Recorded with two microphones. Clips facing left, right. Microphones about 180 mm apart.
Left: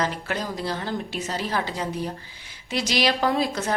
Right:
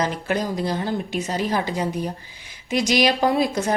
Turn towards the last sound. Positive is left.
turn(degrees=-15)  # may be behind; listen again after turning